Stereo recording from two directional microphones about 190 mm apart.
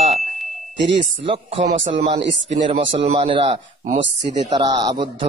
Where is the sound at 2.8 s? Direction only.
40° right (ahead or behind).